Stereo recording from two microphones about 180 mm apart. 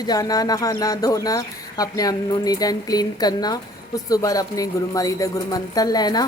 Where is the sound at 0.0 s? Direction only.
20° left (ahead or behind).